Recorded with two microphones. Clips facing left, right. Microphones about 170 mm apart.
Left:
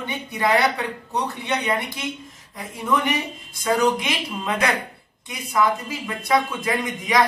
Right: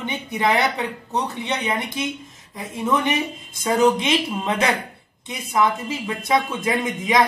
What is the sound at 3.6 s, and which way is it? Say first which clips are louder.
Speech: right 2 dB; 25° right (ahead or behind).